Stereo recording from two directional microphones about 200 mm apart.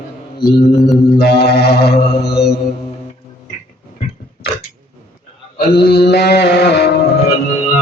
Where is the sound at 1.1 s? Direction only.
55° left (ahead or behind).